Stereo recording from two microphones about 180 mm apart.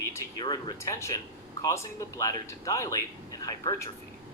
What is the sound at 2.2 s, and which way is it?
A man's voice, 15° left (ahead or behind).